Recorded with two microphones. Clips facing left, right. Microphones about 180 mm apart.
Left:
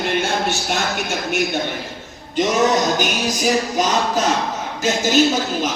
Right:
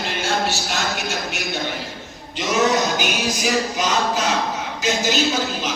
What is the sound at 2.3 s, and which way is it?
A man's voice, 45° left (ahead or behind).